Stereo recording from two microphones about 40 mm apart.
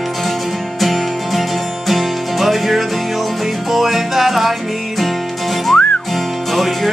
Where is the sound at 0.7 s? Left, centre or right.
Centre.